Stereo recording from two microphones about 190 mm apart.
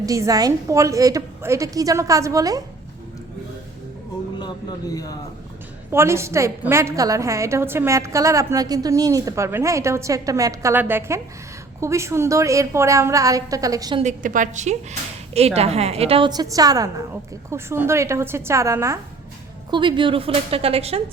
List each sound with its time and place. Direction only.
0.0 s a woman's voice: 20° right (ahead or behind)
5.9 s a woman's voice: 15° right (ahead or behind)
14.0 s a woman's voice: 40° right (ahead or behind); by 18.9 s 15° right (ahead or behind)
19.7 s a woman's voice: 25° right (ahead or behind)